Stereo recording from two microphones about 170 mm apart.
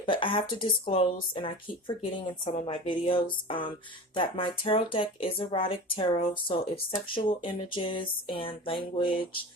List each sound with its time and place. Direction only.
0.0 s speech: 30° left (ahead or behind)
2.4 s speech: 45° left (ahead or behind)